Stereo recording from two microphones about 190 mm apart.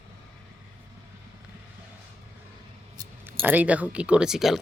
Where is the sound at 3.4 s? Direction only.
10° right (ahead or behind).